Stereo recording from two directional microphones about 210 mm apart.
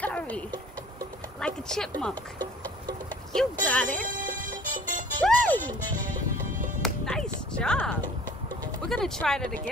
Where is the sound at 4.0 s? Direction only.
40° right (ahead or behind).